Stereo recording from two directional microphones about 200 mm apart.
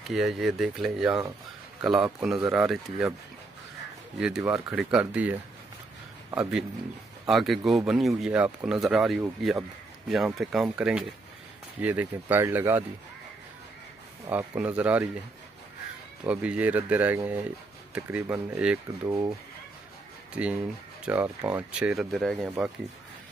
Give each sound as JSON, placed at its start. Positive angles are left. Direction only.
{"t": 0.1, "sound": "speech", "side_deg": 0}
{"t": 4.2, "sound": "speech", "side_deg": -5}
{"t": 14.3, "sound": "speech", "side_deg": -5}
{"t": 16.3, "sound": "speech", "side_deg": -5}
{"t": 19.0, "sound": "speech", "side_deg": -15}
{"t": 21.0, "sound": "speech", "side_deg": -5}